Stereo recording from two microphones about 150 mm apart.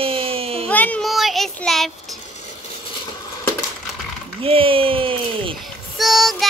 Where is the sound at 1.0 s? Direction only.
Centre (ahead or behind).